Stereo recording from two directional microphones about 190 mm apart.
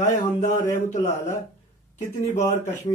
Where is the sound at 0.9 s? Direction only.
35° left (ahead or behind).